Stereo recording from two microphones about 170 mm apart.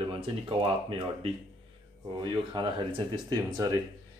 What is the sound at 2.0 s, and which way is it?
Speech, 25° right (ahead or behind).